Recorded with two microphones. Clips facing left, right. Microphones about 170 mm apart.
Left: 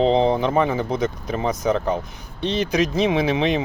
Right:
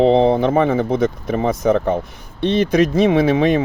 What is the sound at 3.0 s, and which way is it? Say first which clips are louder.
Speech: right 5 dB; 50° right (ahead or behind).